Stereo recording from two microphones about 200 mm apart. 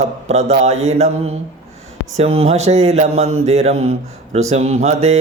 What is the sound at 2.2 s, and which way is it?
Mantra, 30° right (ahead or behind).